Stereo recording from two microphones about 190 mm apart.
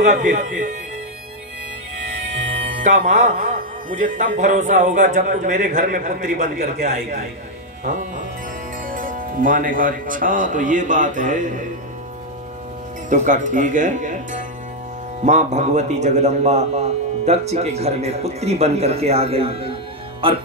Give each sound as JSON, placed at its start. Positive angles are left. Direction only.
{"t": 0.3, "sound": "a man's voice", "side_deg": -40}
{"t": 2.8, "sound": "a man's voice", "side_deg": -40}
{"t": 8.8, "sound": "speech", "side_deg": -45}
{"t": 13.1, "sound": "a man's voice", "side_deg": -40}